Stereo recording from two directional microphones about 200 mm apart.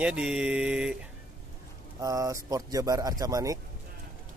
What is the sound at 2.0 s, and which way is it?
Speech, 15° right (ahead or behind).